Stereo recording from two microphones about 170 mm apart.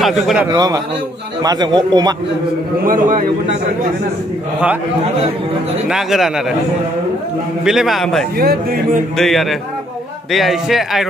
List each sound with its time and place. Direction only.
0.0 s a man's voice: centre (ahead or behind)
0.5 s a man's voice: 20° right (ahead or behind)
2.8 s a man's voice: 55° right (ahead or behind)
5.9 s a man's voice: centre (ahead or behind)
7.6 s a man's voice: centre (ahead or behind)
8.4 s a man's voice: 60° right (ahead or behind)
9.1 s a man's voice: centre (ahead or behind)